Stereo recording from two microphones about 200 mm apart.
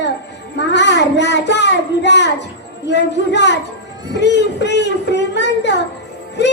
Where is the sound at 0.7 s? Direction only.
60° left (ahead or behind).